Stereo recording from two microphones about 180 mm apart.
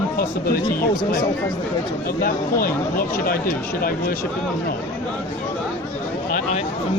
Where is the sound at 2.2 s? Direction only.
55° left (ahead or behind).